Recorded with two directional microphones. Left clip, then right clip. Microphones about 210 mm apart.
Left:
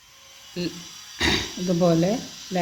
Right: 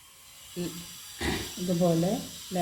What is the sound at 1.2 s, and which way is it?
Speech, 50° left (ahead or behind).